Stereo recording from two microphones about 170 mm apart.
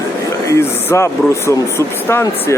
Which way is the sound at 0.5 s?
15° left (ahead or behind).